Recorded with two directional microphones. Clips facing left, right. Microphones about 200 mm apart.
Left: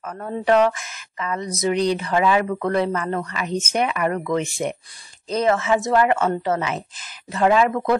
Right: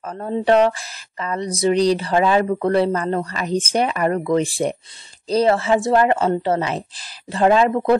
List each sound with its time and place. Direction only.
0.0 s speech: 30° right (ahead or behind)